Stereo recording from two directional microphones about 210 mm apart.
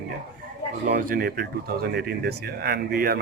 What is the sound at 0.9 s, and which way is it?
Speech, 45° right (ahead or behind).